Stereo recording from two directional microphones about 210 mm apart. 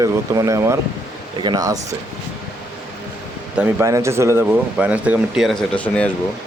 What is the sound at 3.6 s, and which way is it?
Speech, 10° right (ahead or behind).